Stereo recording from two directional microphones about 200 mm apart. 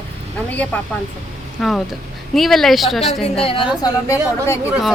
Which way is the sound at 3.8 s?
15° left (ahead or behind).